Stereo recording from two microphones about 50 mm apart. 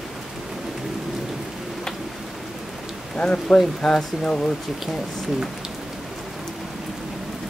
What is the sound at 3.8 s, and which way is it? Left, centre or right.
Speech, centre.